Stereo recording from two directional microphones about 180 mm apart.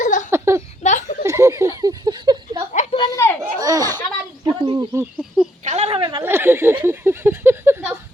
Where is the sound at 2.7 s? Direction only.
40° left (ahead or behind).